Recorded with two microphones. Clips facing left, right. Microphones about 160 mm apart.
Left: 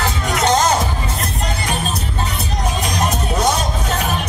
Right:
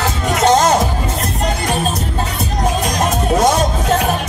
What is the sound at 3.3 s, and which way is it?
Music, 45° right (ahead or behind).